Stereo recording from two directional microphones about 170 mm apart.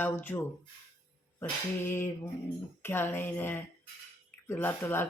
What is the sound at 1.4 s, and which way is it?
Speech, 15° left (ahead or behind).